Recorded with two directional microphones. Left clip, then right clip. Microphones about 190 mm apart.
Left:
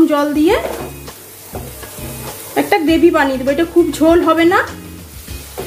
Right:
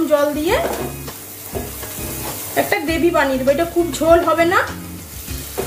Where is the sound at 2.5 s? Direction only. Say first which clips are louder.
Left 5 dB; 50° left (ahead or behind).